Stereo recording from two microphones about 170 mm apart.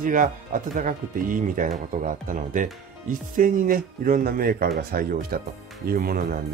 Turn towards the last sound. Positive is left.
turn(degrees=-60)  # may be behind; listen again after turning